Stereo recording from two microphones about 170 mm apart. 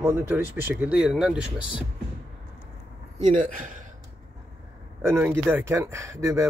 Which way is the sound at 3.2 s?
45° right (ahead or behind).